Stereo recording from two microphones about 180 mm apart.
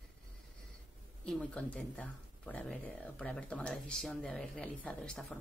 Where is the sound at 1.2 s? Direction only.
5° left (ahead or behind).